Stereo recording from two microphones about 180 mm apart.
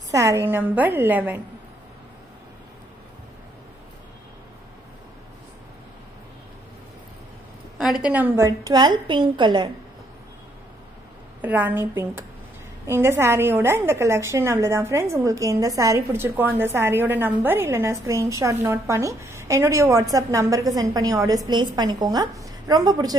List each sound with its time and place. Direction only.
0.1 s a woman's voice: 15° right (ahead or behind)
7.8 s a woman's voice: 5° right (ahead or behind); by 9.7 s 25° right (ahead or behind)
11.4 s a woman's voice: 10° right (ahead or behind)